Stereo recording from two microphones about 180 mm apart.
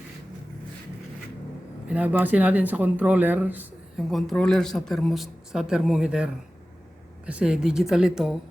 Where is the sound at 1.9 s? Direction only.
10° right (ahead or behind).